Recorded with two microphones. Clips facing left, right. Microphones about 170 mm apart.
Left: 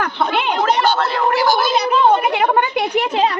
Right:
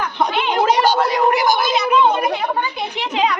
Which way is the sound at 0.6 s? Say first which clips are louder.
Right 3 dB; 10° right (ahead or behind).